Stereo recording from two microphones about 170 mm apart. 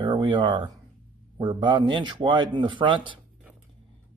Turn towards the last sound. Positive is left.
turn(degrees=-30)  # may be behind; listen again after turning